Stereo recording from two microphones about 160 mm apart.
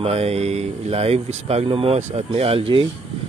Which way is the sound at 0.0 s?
40° right (ahead or behind).